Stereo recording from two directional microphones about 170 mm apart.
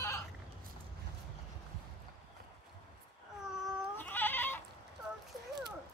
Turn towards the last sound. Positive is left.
turn(degrees=10)  # may be behind; listen again after turning